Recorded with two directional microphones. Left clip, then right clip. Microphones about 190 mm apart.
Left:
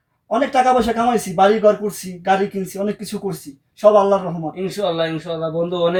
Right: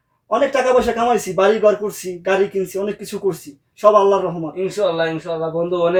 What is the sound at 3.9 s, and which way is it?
Speech, 25° right (ahead or behind).